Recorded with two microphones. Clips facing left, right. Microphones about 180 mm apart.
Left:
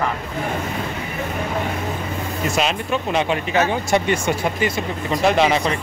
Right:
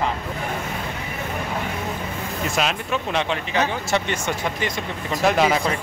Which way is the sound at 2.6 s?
5° left (ahead or behind).